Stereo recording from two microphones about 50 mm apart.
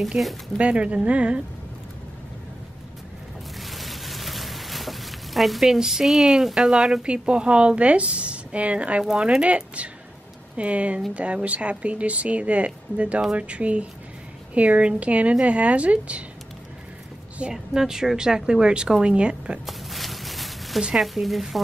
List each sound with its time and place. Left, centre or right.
0.2 s a woman's voice: centre
0.6 s speech: right
3.6 s speech: centre; by 9.0 s right
10.5 s speech: right
17.4 s a woman's voice: centre
19.6 s a sound: centre
20.9 s speech: centre